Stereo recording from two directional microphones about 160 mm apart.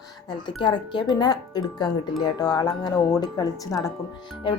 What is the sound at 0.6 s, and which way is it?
A woman's voice, 30° left (ahead or behind).